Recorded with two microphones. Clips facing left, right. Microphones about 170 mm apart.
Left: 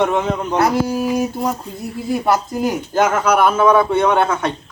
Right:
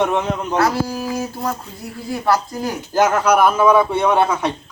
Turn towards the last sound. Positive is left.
turn(degrees=-5)  # may be behind; listen again after turning